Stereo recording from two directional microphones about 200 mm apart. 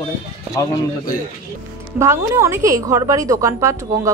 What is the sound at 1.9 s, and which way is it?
A woman's voice, 15° right (ahead or behind).